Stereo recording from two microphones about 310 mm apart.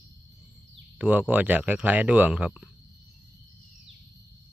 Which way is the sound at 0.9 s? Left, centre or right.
Centre.